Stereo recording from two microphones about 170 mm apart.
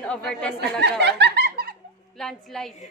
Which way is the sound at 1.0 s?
85° right.